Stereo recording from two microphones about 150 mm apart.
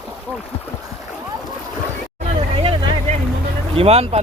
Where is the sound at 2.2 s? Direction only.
35° right (ahead or behind).